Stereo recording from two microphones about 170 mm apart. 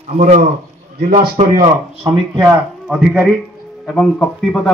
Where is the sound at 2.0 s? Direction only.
25° right (ahead or behind).